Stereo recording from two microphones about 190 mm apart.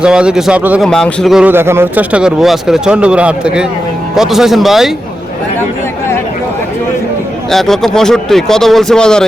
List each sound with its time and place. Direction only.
0.0 s speech: 5° right (ahead or behind)
0.9 s speech: 5° left (ahead or behind)
7.5 s speech: centre (ahead or behind)